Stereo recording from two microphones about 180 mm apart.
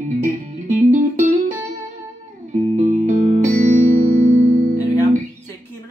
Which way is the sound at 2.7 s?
40° right (ahead or behind).